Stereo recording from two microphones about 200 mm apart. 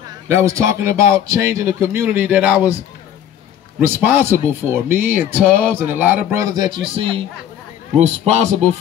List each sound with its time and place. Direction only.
0.3 s speech: 15° right (ahead or behind)
3.8 s a man's voice: 10° right (ahead or behind); by 8.6 s 35° right (ahead or behind)